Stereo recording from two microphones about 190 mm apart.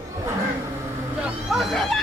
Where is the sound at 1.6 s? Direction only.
Centre (ahead or behind).